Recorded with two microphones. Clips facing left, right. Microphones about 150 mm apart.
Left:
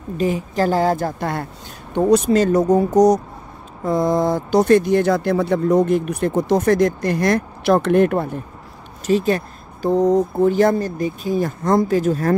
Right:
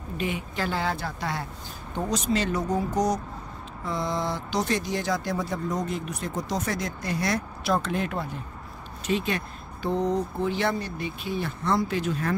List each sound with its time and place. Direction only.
0.2 s speech: 40° left (ahead or behind); by 8.4 s 55° left (ahead or behind)
9.0 s speech: 40° left (ahead or behind)